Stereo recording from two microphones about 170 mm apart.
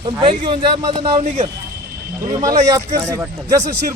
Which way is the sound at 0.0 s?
30° right (ahead or behind).